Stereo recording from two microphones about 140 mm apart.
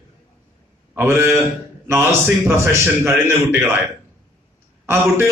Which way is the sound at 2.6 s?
15° right (ahead or behind).